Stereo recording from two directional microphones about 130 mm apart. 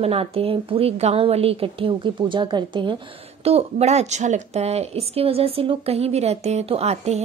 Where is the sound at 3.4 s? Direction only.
55° right (ahead or behind).